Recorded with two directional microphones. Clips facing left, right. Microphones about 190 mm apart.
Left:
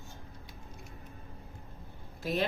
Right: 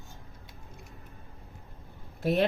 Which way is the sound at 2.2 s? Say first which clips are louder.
Right 6 dB; 60° right (ahead or behind).